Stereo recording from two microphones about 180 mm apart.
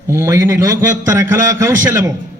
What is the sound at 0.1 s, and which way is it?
A man's voice, 15° right (ahead or behind).